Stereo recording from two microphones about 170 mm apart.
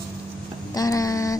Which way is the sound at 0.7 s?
20° left (ahead or behind).